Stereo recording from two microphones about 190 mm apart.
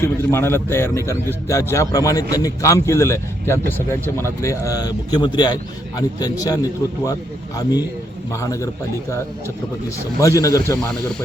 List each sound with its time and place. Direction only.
0.0 s a man's voice: 15° left (ahead or behind)